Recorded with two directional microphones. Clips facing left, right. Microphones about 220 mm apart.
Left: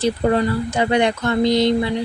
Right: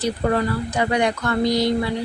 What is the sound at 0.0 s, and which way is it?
Speech, 25° left (ahead or behind).